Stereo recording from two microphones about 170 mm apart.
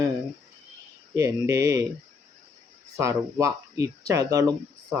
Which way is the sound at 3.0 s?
20° right (ahead or behind).